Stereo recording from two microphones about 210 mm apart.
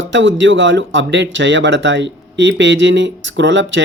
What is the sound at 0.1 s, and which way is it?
Speech, 60° right (ahead or behind).